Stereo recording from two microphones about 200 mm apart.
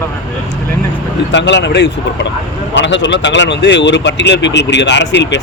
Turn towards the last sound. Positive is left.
turn(degrees=60)  # may be behind; listen again after turning